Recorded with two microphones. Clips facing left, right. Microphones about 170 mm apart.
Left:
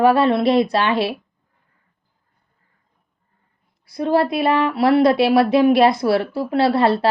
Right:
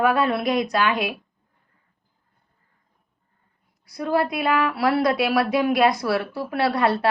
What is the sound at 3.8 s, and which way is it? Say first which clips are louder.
Speech: left 5 dB; 25° left (ahead or behind).